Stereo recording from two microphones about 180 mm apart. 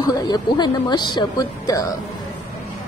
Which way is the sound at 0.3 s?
25° left (ahead or behind).